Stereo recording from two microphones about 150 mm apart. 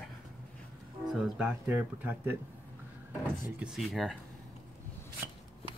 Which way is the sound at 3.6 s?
5° right (ahead or behind).